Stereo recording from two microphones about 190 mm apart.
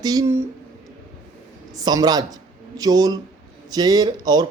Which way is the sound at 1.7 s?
20° right (ahead or behind).